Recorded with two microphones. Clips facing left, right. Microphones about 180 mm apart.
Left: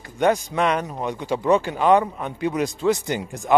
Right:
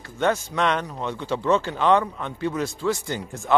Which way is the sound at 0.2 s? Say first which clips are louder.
Left 3 dB; 10° left (ahead or behind).